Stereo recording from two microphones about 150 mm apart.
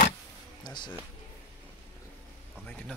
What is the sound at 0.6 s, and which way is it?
Speech, 30° left (ahead or behind).